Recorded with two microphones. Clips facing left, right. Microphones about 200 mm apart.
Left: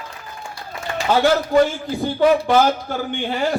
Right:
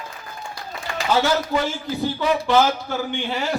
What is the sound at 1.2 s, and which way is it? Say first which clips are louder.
A man's voice: left 6 dB; 50° left (ahead or behind).